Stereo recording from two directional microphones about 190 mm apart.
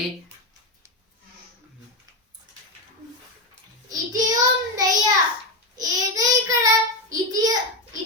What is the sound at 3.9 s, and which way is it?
Child singing, 20° right (ahead or behind).